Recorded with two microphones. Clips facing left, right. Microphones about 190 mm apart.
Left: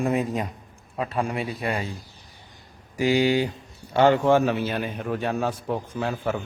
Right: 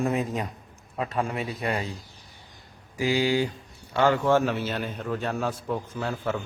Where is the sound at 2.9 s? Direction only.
20° left (ahead or behind).